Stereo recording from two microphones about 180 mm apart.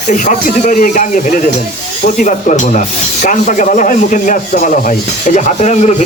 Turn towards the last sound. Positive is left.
turn(degrees=40)  # may be behind; listen again after turning